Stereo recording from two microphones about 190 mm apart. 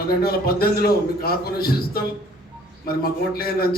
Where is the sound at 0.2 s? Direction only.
55° left (ahead or behind).